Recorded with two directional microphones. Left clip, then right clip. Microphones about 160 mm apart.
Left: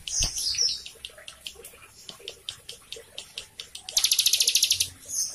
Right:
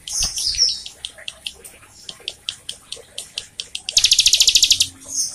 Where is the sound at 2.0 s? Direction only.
15° left (ahead or behind).